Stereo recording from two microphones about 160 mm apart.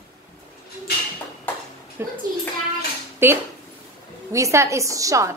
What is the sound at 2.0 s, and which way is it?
Speech, 15° right (ahead or behind).